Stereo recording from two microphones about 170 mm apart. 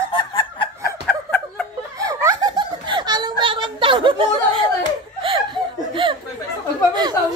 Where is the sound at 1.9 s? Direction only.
20° right (ahead or behind).